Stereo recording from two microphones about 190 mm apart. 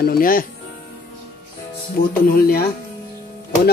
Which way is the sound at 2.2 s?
50° left (ahead or behind).